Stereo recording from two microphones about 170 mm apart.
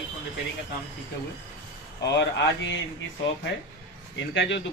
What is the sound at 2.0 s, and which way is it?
Speech, 90° left.